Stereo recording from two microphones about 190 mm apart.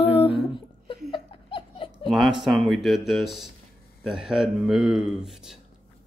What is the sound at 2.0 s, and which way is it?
Speech, centre (ahead or behind).